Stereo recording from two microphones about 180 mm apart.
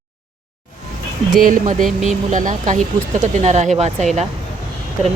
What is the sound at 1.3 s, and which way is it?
Speech, 50° right (ahead or behind).